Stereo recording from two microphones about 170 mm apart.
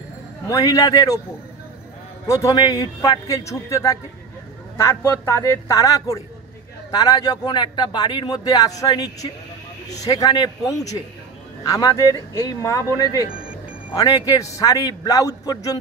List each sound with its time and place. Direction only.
0.5 s a man's voice: 20° left (ahead or behind)
2.2 s a man's voice: 20° left (ahead or behind)